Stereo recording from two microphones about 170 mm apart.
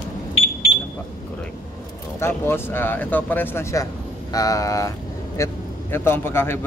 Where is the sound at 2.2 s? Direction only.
15° left (ahead or behind).